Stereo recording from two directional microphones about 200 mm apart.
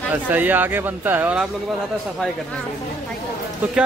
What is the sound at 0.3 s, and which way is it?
Speech, 10° right (ahead or behind).